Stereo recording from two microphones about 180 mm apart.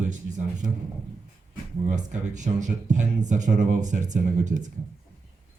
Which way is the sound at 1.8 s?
40° right (ahead or behind).